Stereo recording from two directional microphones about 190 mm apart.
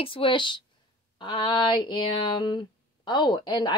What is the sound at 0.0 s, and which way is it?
Speech, 25° left (ahead or behind).